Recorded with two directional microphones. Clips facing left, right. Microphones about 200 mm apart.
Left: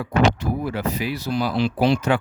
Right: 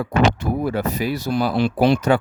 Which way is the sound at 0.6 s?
45° right (ahead or behind).